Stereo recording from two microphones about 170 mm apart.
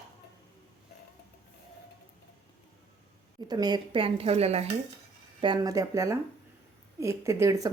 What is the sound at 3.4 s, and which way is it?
A woman's voice, 25° right (ahead or behind).